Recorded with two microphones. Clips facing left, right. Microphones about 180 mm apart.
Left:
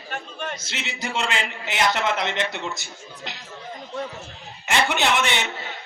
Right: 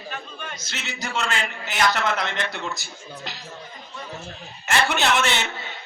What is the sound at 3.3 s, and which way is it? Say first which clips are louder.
Chatter: left 2 dB; 20° left (ahead or behind).